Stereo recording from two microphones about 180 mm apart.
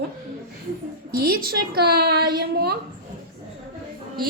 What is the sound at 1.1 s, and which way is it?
A woman's voice, 55° right (ahead or behind).